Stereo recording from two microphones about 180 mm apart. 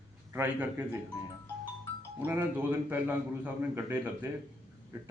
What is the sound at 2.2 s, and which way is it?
A man's voice, 10° right (ahead or behind).